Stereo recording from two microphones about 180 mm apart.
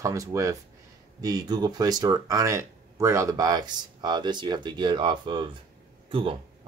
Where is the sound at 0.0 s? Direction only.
20° right (ahead or behind).